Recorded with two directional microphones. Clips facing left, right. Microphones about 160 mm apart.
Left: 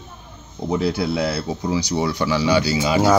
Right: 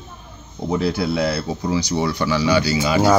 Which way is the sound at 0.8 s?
15° left (ahead or behind).